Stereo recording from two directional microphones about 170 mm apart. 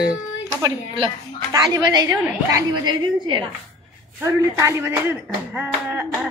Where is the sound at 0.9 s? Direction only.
25° right (ahead or behind).